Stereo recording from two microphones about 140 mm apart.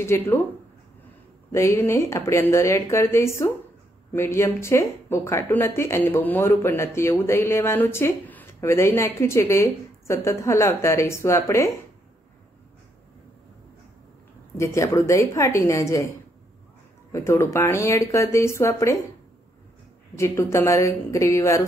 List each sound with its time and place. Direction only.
0.0 s speech: 20° left (ahead or behind)
1.5 s speech: 20° left (ahead or behind)
14.6 s speech: 20° left (ahead or behind)
17.1 s speech: 20° left (ahead or behind)
20.2 s speech: 20° left (ahead or behind)